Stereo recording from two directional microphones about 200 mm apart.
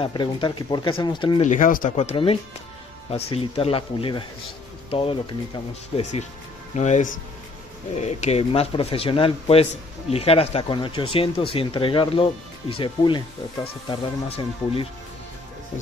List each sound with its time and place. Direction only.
0.0 s speech: 25° left (ahead or behind)
1.4 s speech: 40° left (ahead or behind)